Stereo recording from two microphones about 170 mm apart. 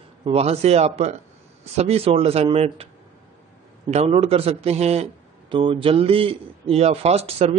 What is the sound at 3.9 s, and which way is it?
A man's voice, 40° right (ahead or behind).